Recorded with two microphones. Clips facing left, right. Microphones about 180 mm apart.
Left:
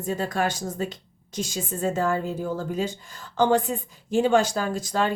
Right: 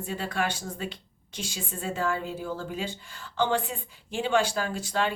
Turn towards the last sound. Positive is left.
turn(degrees=40)  # may be behind; listen again after turning